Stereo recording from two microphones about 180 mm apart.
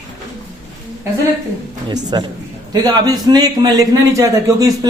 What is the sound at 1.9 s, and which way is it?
A man's voice, 20° right (ahead or behind).